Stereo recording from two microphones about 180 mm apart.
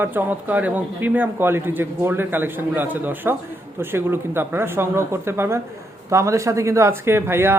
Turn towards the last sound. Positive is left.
turn(degrees=-15)  # may be behind; listen again after turning